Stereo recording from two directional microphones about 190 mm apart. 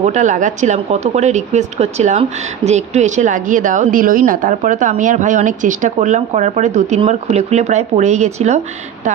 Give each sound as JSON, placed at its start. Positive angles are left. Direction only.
{"t": 0.0, "sound": "speech", "side_deg": -40}